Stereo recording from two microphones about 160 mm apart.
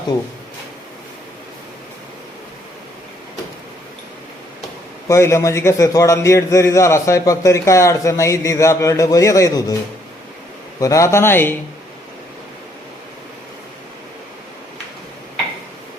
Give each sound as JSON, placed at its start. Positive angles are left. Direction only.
{"t": 5.0, "sound": "a man's voice", "side_deg": 15}
{"t": 10.8, "sound": "speech", "side_deg": 20}